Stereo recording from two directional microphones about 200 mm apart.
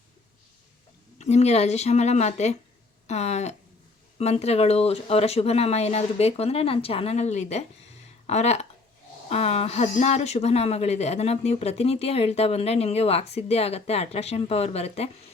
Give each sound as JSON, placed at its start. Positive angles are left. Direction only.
{"t": 1.2, "sound": "speech", "side_deg": 35}